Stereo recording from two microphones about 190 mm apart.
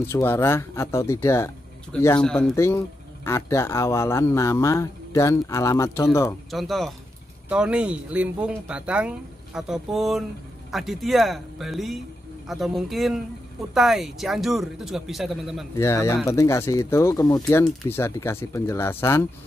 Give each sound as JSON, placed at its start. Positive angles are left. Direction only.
{"t": 0.0, "sound": "speech", "side_deg": 15}
{"t": 6.5, "sound": "speech", "side_deg": 0}
{"t": 15.7, "sound": "speech", "side_deg": 15}